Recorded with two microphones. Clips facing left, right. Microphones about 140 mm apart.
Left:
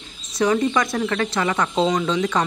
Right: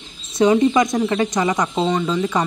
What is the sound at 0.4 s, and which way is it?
Speech, 20° right (ahead or behind).